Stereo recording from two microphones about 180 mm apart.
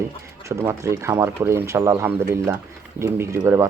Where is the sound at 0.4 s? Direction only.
15° right (ahead or behind).